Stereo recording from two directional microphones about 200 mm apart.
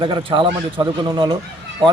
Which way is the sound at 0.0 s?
25° right (ahead or behind).